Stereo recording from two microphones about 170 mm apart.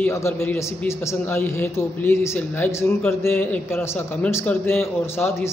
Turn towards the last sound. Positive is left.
turn(degrees=15)  # may be behind; listen again after turning